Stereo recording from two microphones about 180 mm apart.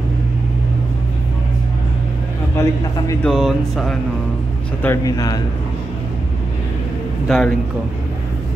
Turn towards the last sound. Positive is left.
turn(degrees=5)  # may be behind; listen again after turning